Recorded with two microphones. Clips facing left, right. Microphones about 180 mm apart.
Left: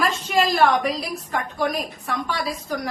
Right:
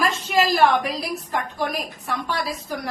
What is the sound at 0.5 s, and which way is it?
A woman's voice, centre (ahead or behind).